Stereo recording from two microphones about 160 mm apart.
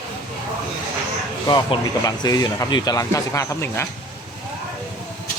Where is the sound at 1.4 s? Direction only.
25° left (ahead or behind).